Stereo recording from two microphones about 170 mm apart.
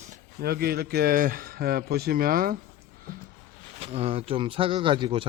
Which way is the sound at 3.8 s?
35° right (ahead or behind).